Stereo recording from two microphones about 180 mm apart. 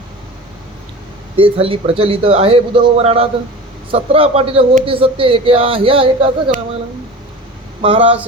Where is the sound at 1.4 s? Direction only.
30° right (ahead or behind).